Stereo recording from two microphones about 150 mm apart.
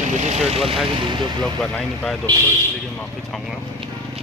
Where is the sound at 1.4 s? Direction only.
5° left (ahead or behind).